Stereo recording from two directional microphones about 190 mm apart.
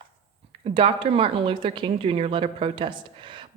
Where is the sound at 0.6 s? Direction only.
30° right (ahead or behind).